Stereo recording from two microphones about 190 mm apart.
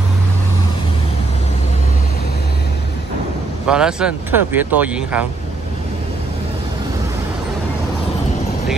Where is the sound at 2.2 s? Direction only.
55° left (ahead or behind).